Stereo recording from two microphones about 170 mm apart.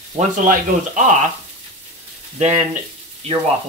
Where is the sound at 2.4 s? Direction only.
40° right (ahead or behind).